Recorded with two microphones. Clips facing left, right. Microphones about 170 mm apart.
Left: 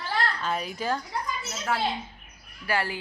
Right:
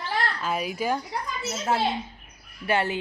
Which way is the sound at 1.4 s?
25° right (ahead or behind).